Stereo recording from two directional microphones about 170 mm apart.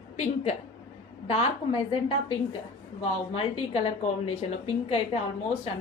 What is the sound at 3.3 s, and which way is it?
A woman's voice, 35° left (ahead or behind).